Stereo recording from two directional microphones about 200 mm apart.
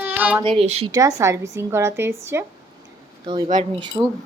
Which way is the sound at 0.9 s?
15° right (ahead or behind).